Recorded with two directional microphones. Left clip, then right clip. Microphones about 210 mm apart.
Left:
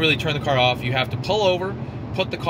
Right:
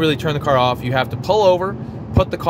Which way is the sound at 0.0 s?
25° right (ahead or behind).